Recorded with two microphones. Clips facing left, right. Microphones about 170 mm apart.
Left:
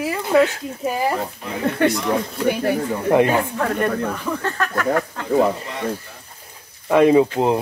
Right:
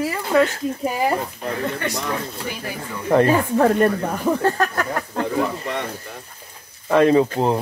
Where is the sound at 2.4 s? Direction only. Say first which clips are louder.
Left 11 dB; 60° left (ahead or behind).